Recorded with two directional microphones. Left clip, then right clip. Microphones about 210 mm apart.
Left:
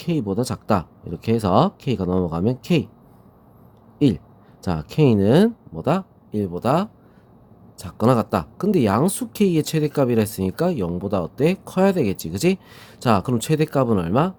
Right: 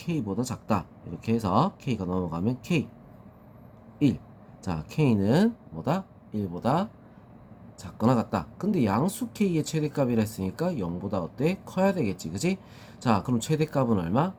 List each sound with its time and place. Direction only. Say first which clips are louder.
0.0 s speech: left 8 dB; 40° left (ahead or behind)
3.9 s speech: left 6 dB; 40° left (ahead or behind)